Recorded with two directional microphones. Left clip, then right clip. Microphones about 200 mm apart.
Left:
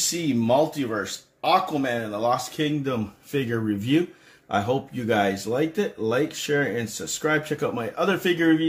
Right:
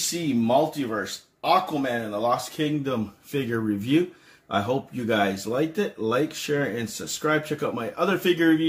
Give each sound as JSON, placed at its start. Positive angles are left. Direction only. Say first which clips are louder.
{"t": 0.1, "sound": "speech", "louder": "right 1 dB", "side_deg": 25}